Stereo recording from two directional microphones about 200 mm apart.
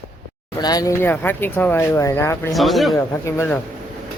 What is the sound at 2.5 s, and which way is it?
Speech, centre (ahead or behind).